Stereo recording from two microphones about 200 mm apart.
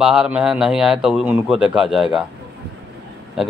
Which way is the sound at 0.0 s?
5° right (ahead or behind).